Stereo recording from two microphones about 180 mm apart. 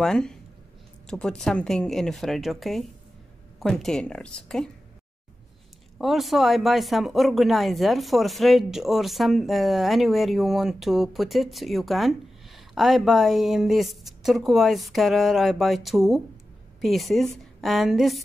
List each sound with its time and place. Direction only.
0.0 s speech: 5° left (ahead or behind)
5.9 s speech: centre (ahead or behind)